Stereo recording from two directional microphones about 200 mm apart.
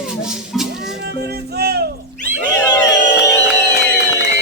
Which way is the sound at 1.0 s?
55° right (ahead or behind).